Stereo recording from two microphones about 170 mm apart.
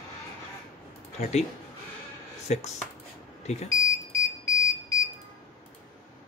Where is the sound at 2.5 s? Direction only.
45° left (ahead or behind).